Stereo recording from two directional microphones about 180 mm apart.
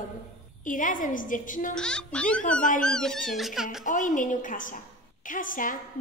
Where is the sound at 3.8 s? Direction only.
45° left (ahead or behind).